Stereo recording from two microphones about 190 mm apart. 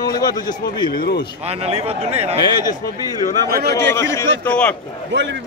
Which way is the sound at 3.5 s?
55° right (ahead or behind).